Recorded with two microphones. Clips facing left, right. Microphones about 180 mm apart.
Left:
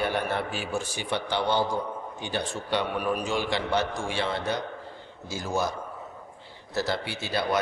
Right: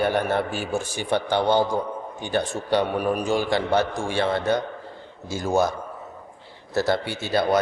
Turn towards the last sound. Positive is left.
turn(degrees=-50)  # may be behind; listen again after turning